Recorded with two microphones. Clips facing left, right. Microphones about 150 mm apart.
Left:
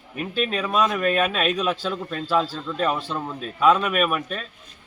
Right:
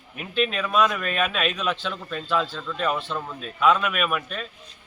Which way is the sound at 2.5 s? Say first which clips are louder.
Left 2 dB; 20° left (ahead or behind).